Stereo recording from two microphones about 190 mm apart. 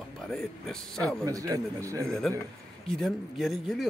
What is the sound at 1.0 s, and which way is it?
A man's voice, 15° right (ahead or behind).